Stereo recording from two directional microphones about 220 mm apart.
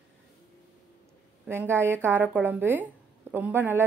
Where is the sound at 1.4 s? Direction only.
10° right (ahead or behind).